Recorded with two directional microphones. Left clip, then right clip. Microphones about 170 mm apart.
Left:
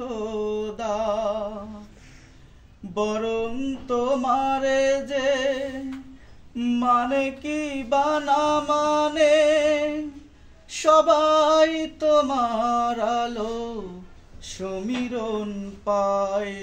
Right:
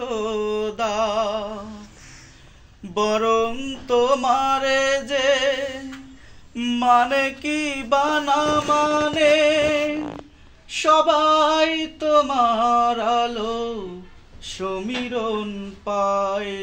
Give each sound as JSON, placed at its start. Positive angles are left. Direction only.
{"t": 0.2, "sound": "mantra", "side_deg": 20}
{"t": 2.9, "sound": "mantra", "side_deg": 20}
{"t": 6.5, "sound": "a sound", "side_deg": 20}